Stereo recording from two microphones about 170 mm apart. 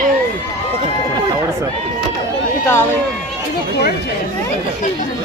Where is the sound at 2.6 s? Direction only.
15° left (ahead or behind).